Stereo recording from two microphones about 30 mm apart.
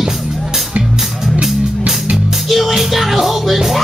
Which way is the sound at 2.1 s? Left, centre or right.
Centre.